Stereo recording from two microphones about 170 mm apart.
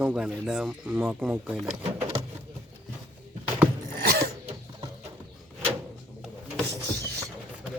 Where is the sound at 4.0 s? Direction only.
65° right (ahead or behind).